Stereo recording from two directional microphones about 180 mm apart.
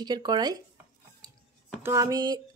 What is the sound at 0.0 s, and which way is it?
Speech, 25° right (ahead or behind).